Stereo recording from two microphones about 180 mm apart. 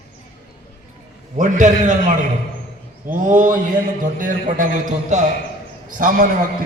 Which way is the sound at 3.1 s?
45° right (ahead or behind).